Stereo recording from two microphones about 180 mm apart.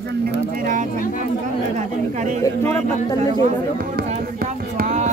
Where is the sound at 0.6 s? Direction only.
45° right (ahead or behind).